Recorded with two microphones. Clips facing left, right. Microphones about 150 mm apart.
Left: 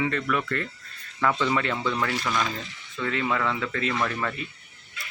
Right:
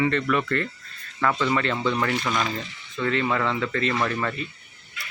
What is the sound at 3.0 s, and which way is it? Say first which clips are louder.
Speech: right 2 dB; 5° left (ahead or behind).